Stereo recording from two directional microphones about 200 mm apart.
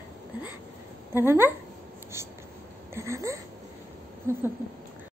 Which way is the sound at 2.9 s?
15° right (ahead or behind).